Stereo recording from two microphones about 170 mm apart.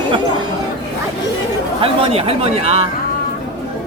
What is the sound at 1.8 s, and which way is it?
Speech, 35° right (ahead or behind).